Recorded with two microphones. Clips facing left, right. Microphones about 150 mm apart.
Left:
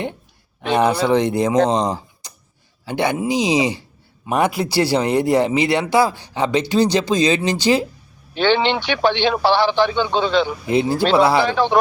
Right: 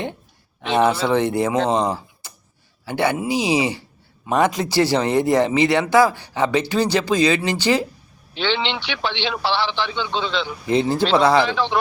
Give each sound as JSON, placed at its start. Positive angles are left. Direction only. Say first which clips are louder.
{"t": 0.7, "sound": "speech", "louder": "left 2 dB", "side_deg": 15}
{"t": 1.7, "sound": "a sound", "louder": "left 1 dB", "side_deg": 20}
{"t": 2.8, "sound": "speech", "louder": "left 1 dB", "side_deg": 15}
{"t": 8.3, "sound": "a man's voice", "louder": "left 6 dB", "side_deg": 45}
{"t": 10.7, "sound": "speech", "louder": "right 1 dB", "side_deg": 15}
{"t": 11.4, "sound": "a man's voice", "louder": "left 4 dB", "side_deg": 50}